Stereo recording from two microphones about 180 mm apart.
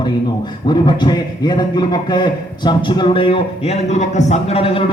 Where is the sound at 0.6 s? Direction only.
25° left (ahead or behind).